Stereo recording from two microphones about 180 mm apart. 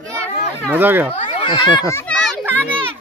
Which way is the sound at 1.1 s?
30° left (ahead or behind).